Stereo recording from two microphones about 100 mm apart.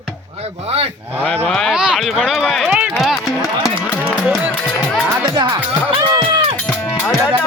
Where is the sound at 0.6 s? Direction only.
90° right.